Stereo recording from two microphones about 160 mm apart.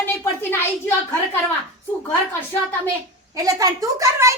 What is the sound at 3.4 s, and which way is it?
Speech, 20° right (ahead or behind).